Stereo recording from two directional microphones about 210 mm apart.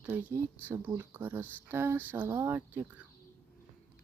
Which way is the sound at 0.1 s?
5° right (ahead or behind).